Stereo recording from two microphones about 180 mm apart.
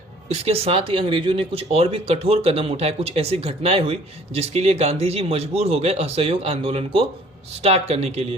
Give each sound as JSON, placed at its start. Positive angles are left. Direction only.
{"t": 0.3, "sound": "speech", "side_deg": -35}